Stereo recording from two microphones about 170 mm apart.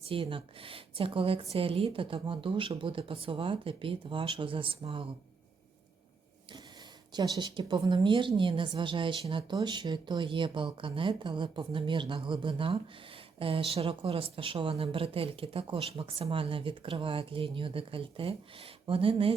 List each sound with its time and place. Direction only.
0.1 s speech: 30° right (ahead or behind)
7.1 s a woman's voice: 25° right (ahead or behind)